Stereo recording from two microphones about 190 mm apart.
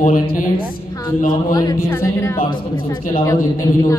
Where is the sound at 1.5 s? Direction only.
15° left (ahead or behind).